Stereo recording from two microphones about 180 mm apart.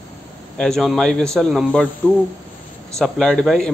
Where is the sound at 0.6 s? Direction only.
Centre (ahead or behind).